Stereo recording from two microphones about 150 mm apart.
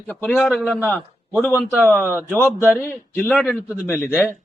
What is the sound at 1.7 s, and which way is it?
Speech, centre (ahead or behind).